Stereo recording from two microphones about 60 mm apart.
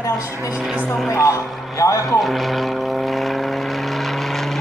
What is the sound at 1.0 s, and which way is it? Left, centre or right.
Speech, left.